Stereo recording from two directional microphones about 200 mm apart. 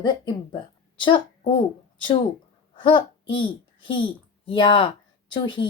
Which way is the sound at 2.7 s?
25° left (ahead or behind).